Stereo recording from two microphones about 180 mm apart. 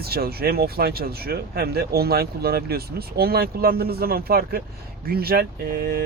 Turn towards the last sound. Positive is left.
turn(degrees=-55)  # may be behind; listen again after turning